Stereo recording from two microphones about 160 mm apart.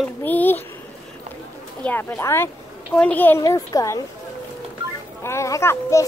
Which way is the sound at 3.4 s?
20° left (ahead or behind).